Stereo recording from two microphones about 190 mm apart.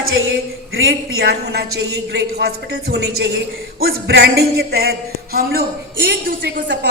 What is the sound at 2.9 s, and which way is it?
A woman's voice, 60° right (ahead or behind).